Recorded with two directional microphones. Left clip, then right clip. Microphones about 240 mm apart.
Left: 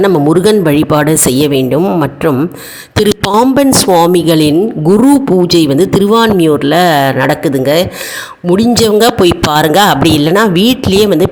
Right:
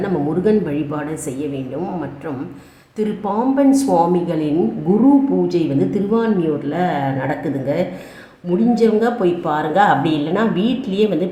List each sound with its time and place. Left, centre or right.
0.0 s speech: left